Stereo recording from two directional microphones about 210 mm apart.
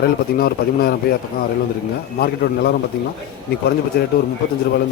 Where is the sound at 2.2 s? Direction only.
50° left (ahead or behind).